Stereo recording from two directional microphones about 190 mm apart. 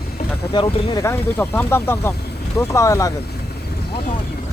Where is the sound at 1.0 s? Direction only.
10° left (ahead or behind).